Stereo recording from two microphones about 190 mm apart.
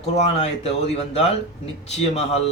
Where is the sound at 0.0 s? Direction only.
35° left (ahead or behind).